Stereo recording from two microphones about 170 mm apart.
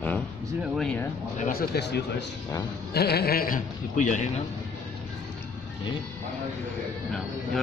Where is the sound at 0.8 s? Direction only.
5° left (ahead or behind).